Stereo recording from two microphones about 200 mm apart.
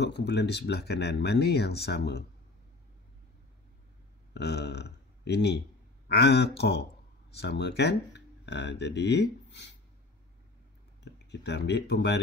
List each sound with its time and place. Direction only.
0.0 s speech: 60° left (ahead or behind)
4.3 s speech: 55° left (ahead or behind)
11.1 s speech: 60° left (ahead or behind)